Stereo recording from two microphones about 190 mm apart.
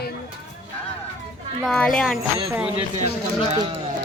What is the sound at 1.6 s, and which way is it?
Speech, 5° left (ahead or behind).